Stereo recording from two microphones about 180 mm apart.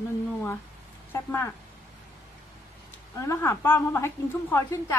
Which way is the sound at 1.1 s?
10° left (ahead or behind).